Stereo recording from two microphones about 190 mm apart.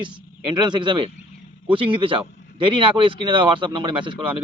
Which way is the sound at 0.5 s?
25° right (ahead or behind).